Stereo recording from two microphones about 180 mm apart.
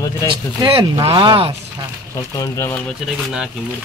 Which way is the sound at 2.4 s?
15° left (ahead or behind).